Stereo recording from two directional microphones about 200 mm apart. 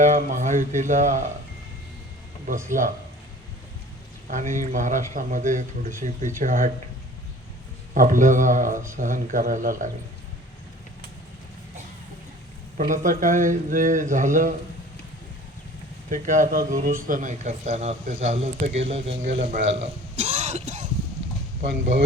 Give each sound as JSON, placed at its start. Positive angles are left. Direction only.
{"t": 0.0, "sound": "a man's voice", "side_deg": -40}
{"t": 2.6, "sound": "a man's voice", "side_deg": -40}
{"t": 4.3, "sound": "a man's voice", "side_deg": -40}
{"t": 7.9, "sound": "a man's voice", "side_deg": -40}
{"t": 12.7, "sound": "a man's voice", "side_deg": -40}
{"t": 16.0, "sound": "a man's voice", "side_deg": -40}
{"t": 19.7, "sound": "burping", "side_deg": -35}